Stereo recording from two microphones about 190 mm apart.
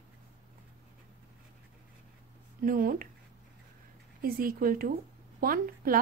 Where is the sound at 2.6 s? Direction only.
45° right (ahead or behind).